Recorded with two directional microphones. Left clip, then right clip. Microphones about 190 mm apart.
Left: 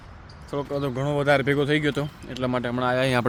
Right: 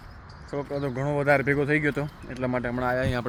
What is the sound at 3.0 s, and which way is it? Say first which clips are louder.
Speech: left 5 dB; 50° left (ahead or behind).